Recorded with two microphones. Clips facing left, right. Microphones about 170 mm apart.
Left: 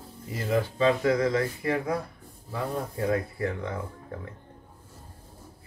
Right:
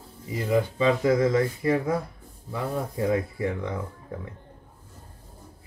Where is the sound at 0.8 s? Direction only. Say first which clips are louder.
Right 1 dB; 20° right (ahead or behind).